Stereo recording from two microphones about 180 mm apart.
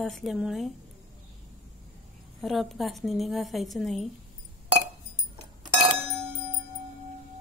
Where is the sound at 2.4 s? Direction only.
Centre (ahead or behind).